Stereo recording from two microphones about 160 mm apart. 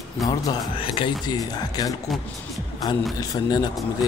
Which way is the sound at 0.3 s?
30° left (ahead or behind).